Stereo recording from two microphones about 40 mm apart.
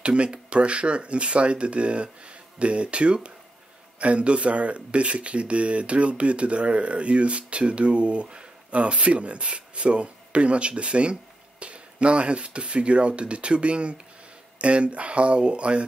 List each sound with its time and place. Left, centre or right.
0.0 s speech: right